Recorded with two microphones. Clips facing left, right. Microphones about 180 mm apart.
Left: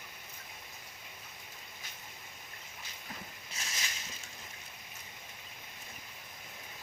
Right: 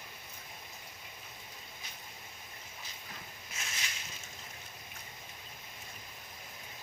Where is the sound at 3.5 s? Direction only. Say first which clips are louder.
Even; 35° left (ahead or behind).